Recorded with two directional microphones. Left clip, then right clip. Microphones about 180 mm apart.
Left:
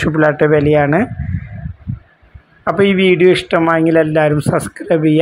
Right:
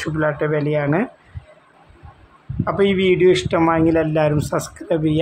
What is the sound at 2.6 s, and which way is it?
Speech, 20° left (ahead or behind).